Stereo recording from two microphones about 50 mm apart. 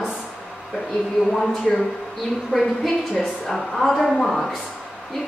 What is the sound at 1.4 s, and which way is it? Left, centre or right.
Speech, centre.